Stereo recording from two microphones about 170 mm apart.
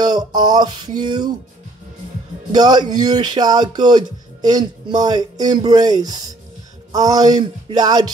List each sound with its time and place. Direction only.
0.0 s speech: 25° right (ahead or behind)
2.5 s speech: 25° right (ahead or behind)